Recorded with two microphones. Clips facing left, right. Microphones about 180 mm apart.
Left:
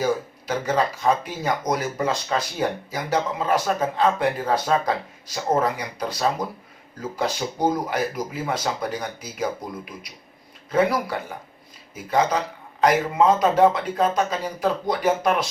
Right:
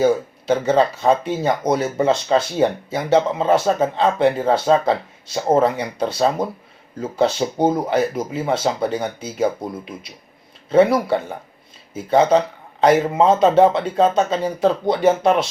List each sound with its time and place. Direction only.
0.0 s speech: 25° right (ahead or behind)